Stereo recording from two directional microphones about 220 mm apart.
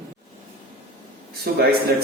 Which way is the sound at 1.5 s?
45° right (ahead or behind).